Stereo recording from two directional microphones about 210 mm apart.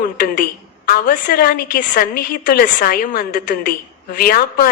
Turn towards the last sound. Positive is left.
turn(degrees=45)  # may be behind; listen again after turning